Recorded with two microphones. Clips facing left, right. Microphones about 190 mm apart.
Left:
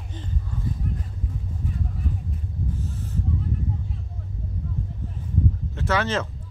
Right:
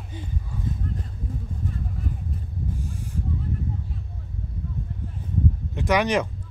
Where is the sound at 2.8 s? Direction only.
10° right (ahead or behind).